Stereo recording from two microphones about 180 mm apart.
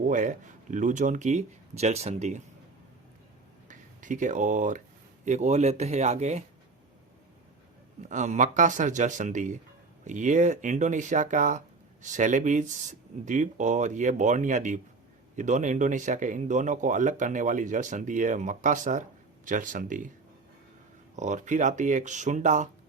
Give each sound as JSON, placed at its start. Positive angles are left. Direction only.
{"t": 0.0, "sound": "speech", "side_deg": -45}
{"t": 3.7, "sound": "speech", "side_deg": -45}
{"t": 8.0, "sound": "speech", "side_deg": -40}
{"t": 21.2, "sound": "speech", "side_deg": -40}